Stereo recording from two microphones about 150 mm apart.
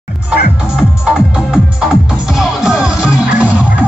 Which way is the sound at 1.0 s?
5° right (ahead or behind).